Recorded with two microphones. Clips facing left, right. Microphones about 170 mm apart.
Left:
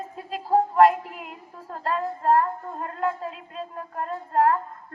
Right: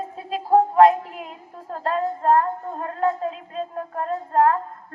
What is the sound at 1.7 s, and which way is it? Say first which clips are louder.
A woman's voice: right 4 dB; 40° right (ahead or behind).